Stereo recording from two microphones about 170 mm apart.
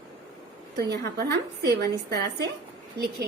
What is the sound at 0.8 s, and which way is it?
A woman's voice, 80° right.